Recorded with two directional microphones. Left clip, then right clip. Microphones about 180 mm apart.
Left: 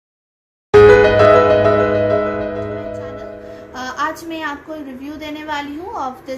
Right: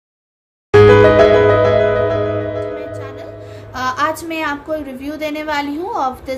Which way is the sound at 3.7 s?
40° right (ahead or behind).